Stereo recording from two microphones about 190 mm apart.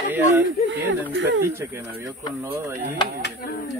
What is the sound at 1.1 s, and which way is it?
Speech, 70° right (ahead or behind).